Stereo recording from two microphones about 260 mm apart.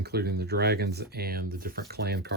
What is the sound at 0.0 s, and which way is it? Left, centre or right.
Speech, right.